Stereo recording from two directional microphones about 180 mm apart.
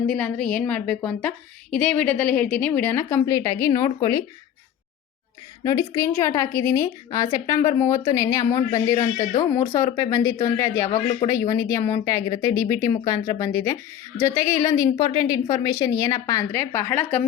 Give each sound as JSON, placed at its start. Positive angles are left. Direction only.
{"t": 0.1, "sound": "a woman's voice", "side_deg": 5}
{"t": 5.6, "sound": "a woman's voice", "side_deg": 15}